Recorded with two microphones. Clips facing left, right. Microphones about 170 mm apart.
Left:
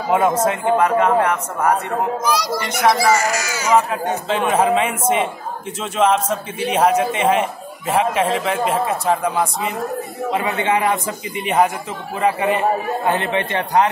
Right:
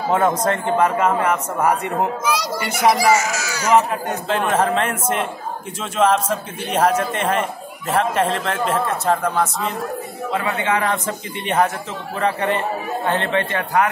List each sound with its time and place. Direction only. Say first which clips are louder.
0.1 s a child's voice: left 2 dB; 10° left (ahead or behind)
11.3 s a man's voice: left 2 dB; 5° left (ahead or behind); by 13.8 s 20° left (ahead or behind)